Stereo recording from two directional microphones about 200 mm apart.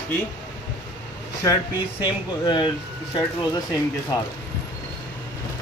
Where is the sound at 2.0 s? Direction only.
25° left (ahead or behind).